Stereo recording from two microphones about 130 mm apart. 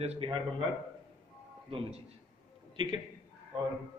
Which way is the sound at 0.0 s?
50° right (ahead or behind).